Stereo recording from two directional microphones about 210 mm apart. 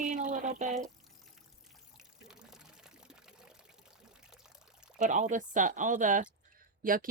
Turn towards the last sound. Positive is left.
turn(degrees=-40)  # may be behind; listen again after turning